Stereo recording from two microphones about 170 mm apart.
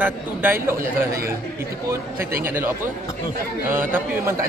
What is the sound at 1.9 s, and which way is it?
Speech, 15° right (ahead or behind).